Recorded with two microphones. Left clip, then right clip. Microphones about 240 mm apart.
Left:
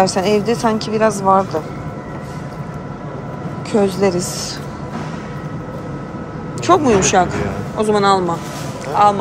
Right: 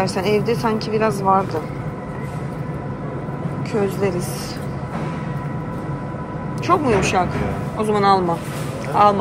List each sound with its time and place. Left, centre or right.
0.0 s speech: centre
3.7 s speech: centre
6.7 s speech: centre